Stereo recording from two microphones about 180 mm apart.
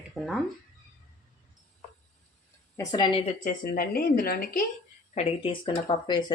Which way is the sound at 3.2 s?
45° left (ahead or behind).